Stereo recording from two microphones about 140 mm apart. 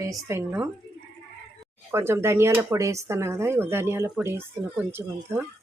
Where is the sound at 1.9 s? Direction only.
20° right (ahead or behind).